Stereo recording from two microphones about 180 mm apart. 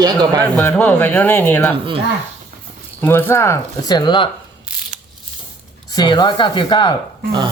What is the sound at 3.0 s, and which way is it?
Speech, 15° left (ahead or behind).